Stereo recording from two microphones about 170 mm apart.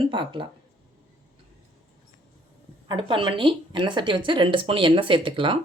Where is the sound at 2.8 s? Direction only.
30° right (ahead or behind).